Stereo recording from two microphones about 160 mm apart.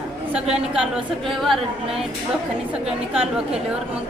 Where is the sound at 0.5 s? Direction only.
5° right (ahead or behind).